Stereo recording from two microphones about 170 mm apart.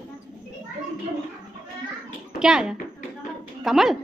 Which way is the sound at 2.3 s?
5° right (ahead or behind).